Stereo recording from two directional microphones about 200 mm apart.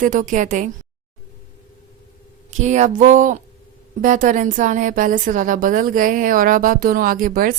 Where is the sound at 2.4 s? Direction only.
35° right (ahead or behind).